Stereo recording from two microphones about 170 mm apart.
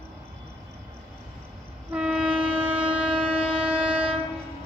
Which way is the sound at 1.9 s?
5° right (ahead or behind).